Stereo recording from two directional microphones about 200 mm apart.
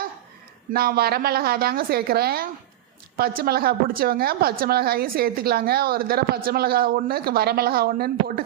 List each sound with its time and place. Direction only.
0.7 s a woman's voice: 50° right (ahead or behind)